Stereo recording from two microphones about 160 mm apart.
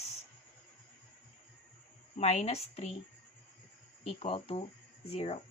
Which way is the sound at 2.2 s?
45° left (ahead or behind).